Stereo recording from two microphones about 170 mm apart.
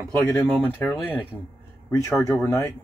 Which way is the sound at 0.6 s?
10° left (ahead or behind).